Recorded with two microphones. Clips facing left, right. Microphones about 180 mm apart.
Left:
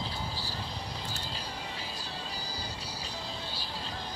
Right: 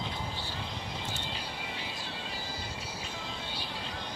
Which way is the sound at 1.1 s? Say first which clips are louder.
Right 1 dB; 35° left (ahead or behind).